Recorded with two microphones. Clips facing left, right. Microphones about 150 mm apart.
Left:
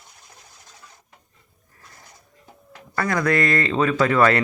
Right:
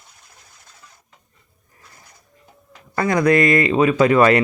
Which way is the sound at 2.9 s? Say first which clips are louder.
Right 5 dB; 20° right (ahead or behind).